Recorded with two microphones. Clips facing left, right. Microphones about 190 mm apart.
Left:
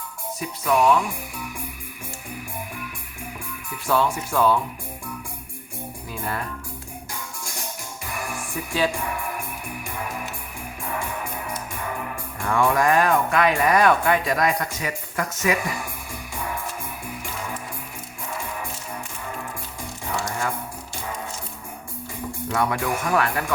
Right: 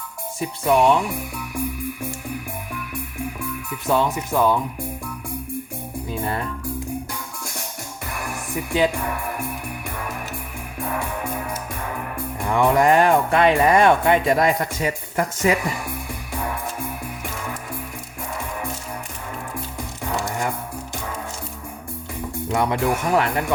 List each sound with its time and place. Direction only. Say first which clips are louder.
0.3 s speech: right 3 dB; 30° right (ahead or behind)
3.8 s speech: right 2 dB; 20° right (ahead or behind)
6.1 s speech: right 4 dB; 25° right (ahead or behind)
8.5 s speech: right 4 dB; 20° right (ahead or behind)
12.5 s speech: right 3 dB; 20° right (ahead or behind)
22.5 s speech: right 3 dB; 20° right (ahead or behind)